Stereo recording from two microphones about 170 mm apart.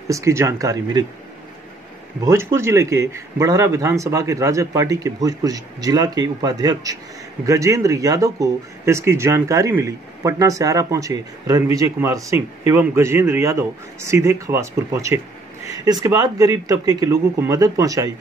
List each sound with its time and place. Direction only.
0.1 s speech: 15° right (ahead or behind)
2.2 s speech: 15° right (ahead or behind)